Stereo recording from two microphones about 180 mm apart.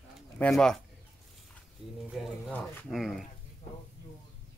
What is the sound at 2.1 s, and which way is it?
A man's voice, centre (ahead or behind).